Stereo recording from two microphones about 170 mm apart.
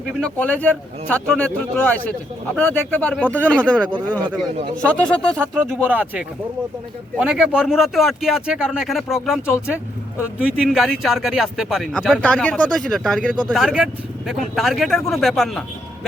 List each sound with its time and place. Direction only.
0.1 s speech: 5° left (ahead or behind)
5.5 s speech: 10° right (ahead or behind)